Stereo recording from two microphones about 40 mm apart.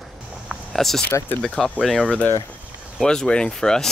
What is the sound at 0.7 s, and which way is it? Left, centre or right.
Speech, centre.